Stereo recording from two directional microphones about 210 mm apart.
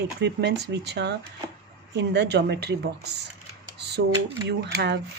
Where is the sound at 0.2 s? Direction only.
55° right (ahead or behind).